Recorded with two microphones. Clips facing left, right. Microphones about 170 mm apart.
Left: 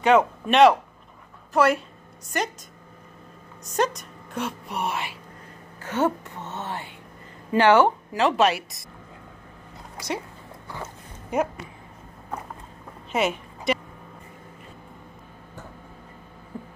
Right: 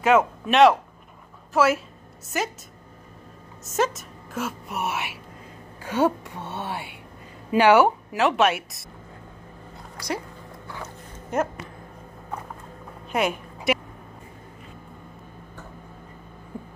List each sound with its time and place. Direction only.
0.0 s a woman's voice: centre (ahead or behind)
3.6 s a woman's voice: 5° right (ahead or behind)
13.1 s a sound: centre (ahead or behind)